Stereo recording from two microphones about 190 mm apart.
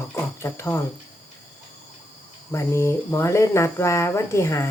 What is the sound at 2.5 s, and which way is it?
Speech, 15° left (ahead or behind).